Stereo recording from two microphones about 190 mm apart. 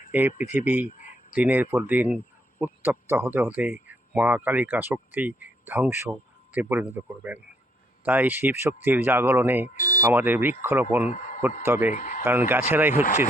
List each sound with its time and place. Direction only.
0.1 s speech: 10° right (ahead or behind)
9.6 s speech: 45° left (ahead or behind)
10.0 s speech: 10° right (ahead or behind)
11.1 s speech: 45° left (ahead or behind)
11.6 s speech: 15° right (ahead or behind)
11.9 s speech: 45° left (ahead or behind)
12.2 s speech: 10° right (ahead or behind)